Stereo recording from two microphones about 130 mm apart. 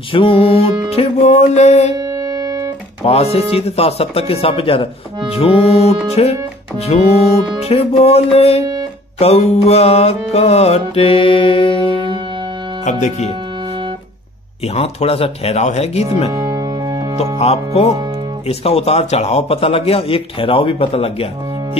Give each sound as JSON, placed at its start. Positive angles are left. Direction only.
{"t": 0.1, "sound": "a man's voice", "side_deg": 45}
{"t": 3.0, "sound": "a man's voice", "side_deg": 50}
{"t": 11.9, "sound": "music", "side_deg": -35}
{"t": 14.8, "sound": "speech", "side_deg": 50}
{"t": 16.3, "sound": "music", "side_deg": -30}
{"t": 17.2, "sound": "a man's voice", "side_deg": 55}